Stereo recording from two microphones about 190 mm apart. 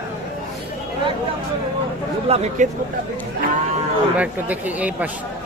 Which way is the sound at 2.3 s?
35° right (ahead or behind).